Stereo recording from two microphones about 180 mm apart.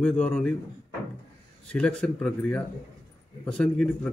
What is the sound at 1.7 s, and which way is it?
A man's voice, 5° left (ahead or behind).